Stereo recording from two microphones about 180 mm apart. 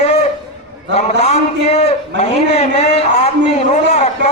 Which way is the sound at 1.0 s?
35° left (ahead or behind).